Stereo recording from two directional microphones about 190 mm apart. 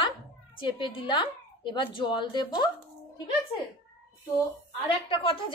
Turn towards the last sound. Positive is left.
turn(degrees=30)  # may be behind; listen again after turning